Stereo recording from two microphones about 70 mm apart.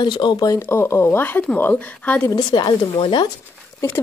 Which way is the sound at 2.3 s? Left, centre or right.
Left.